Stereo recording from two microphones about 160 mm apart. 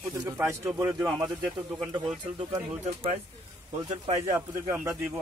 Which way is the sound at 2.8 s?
45° right (ahead or behind).